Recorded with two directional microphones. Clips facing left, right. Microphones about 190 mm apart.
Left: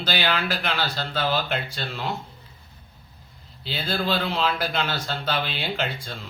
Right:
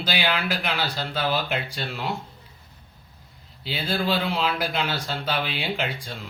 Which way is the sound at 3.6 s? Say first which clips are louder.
Right 1 dB; 10° right (ahead or behind).